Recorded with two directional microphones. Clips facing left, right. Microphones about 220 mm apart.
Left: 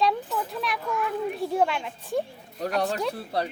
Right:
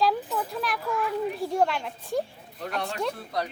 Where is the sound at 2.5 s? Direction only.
40° left (ahead or behind).